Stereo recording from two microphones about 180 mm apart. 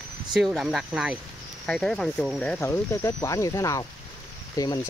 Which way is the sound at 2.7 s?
15° left (ahead or behind).